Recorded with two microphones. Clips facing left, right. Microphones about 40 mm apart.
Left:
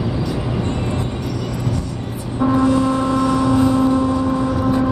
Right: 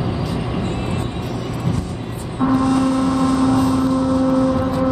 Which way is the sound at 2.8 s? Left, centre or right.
Left.